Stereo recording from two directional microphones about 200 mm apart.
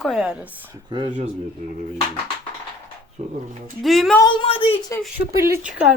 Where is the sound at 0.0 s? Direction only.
Centre (ahead or behind).